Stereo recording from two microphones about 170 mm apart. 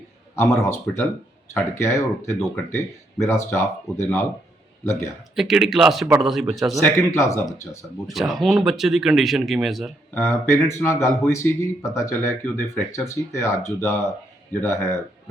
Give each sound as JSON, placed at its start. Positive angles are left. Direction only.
{"t": 0.3, "sound": "speech", "side_deg": 15}
{"t": 5.3, "sound": "speech", "side_deg": 0}
{"t": 6.8, "sound": "speech", "side_deg": 15}
{"t": 8.0, "sound": "speech", "side_deg": 0}
{"t": 10.2, "sound": "speech", "side_deg": 15}